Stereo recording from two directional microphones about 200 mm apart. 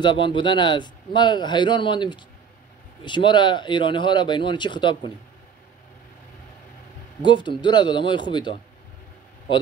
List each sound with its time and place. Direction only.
0.0 s a man's voice: 25° left (ahead or behind)
7.2 s a man's voice: 25° left (ahead or behind)